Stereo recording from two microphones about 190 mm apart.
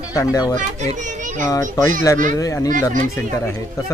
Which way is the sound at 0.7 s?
40° right (ahead or behind).